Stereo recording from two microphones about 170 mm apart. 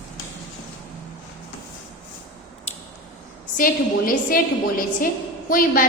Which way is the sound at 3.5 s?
55° left (ahead or behind).